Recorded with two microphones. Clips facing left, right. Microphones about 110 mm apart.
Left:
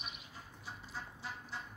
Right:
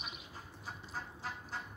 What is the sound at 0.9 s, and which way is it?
Vehicle, 45° right (ahead or behind).